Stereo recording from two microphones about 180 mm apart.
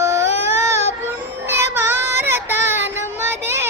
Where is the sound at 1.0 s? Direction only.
15° right (ahead or behind).